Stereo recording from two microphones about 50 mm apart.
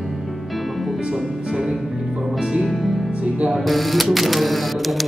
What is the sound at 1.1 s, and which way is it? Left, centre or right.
Music, centre.